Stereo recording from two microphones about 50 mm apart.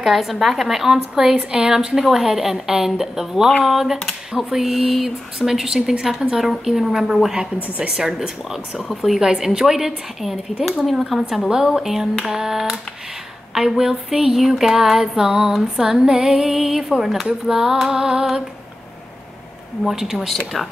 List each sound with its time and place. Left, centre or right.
0.0 s female singing: centre
4.3 s speech: centre
6.6 s female singing: centre
7.6 s a woman's voice: right
7.9 s female singing: centre
19.9 s speech: centre